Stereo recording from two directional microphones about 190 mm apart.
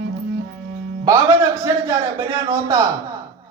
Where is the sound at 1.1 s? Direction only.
15° right (ahead or behind).